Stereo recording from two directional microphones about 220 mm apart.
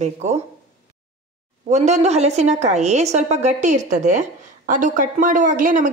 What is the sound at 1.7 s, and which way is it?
A woman's voice, 30° right (ahead or behind).